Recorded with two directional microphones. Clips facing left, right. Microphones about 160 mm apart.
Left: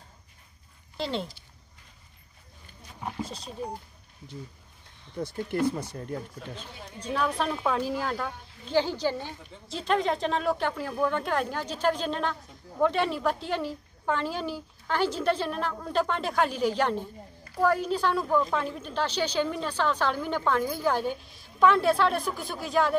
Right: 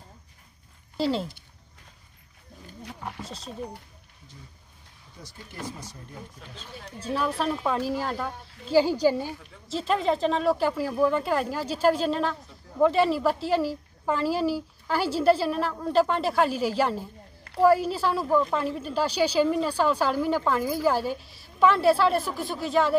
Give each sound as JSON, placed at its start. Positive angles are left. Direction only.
{"t": 0.9, "sound": "speech", "side_deg": -5}
{"t": 3.2, "sound": "speech", "side_deg": 0}
{"t": 5.2, "sound": "speech", "side_deg": 60}
{"t": 7.0, "sound": "a woman's voice", "side_deg": -5}